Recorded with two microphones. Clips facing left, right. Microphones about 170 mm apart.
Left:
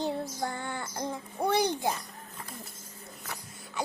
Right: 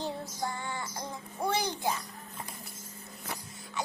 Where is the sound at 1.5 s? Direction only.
60° left (ahead or behind).